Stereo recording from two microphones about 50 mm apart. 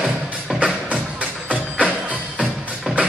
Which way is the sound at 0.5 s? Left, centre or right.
Right.